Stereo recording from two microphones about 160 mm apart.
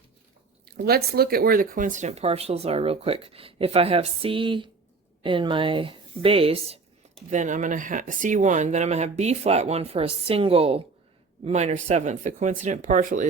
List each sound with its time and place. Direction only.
0.6 s speech: 75° right (ahead or behind); by 6.7 s 35° right (ahead or behind)
7.3 s speech: 50° right (ahead or behind)